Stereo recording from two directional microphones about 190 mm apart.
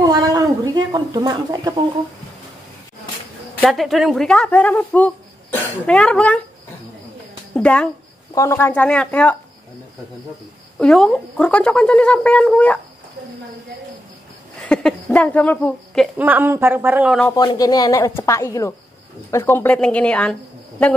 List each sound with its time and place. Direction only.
0.0 s a sound: 20° right (ahead or behind)
3.5 s a woman's voice: centre (ahead or behind)
7.5 s a woman's voice: 5° left (ahead or behind)
10.8 s a woman's voice: centre (ahead or behind)
14.6 s speech: 5° left (ahead or behind)
16.2 s speech: 10° right (ahead or behind)
17.4 s speech: 20° left (ahead or behind); by 20.3 s 5° left (ahead or behind)